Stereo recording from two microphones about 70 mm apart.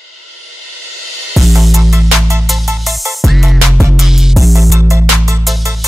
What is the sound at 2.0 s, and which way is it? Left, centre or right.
Music, right.